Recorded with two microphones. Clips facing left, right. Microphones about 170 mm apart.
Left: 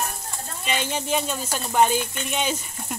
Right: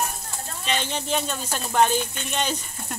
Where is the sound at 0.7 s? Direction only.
10° left (ahead or behind).